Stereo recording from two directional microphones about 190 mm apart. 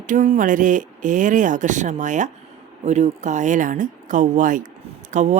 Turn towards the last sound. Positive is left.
turn(degrees=-40)  # may be behind; listen again after turning